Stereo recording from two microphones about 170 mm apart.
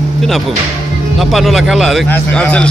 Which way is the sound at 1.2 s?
Centre (ahead or behind).